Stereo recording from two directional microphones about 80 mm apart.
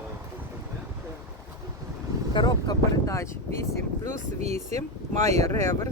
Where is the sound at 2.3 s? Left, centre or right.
Left.